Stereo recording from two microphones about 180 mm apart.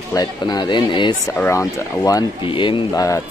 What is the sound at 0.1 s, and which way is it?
Speech, 20° left (ahead or behind).